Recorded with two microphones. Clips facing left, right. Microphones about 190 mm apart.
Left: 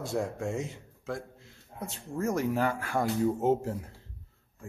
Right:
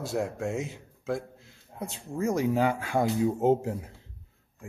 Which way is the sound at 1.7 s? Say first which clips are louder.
Right 2 dB; 10° right (ahead or behind).